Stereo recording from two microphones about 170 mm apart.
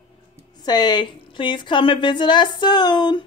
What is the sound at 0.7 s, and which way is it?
A woman's voice, 25° left (ahead or behind).